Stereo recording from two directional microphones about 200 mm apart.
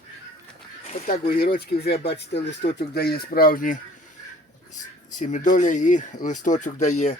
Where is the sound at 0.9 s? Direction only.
40° left (ahead or behind).